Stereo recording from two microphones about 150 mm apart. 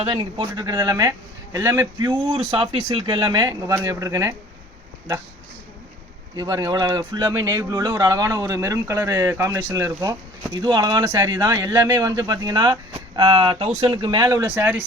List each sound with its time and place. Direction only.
0.0 s speech: 35° right (ahead or behind); by 2.0 s 20° right (ahead or behind)
2.0 s speech: 40° right (ahead or behind); by 4.4 s 20° right (ahead or behind)
6.3 s speech: 25° right (ahead or behind)
10.6 s speech: 30° right (ahead or behind); by 14.8 s 10° right (ahead or behind)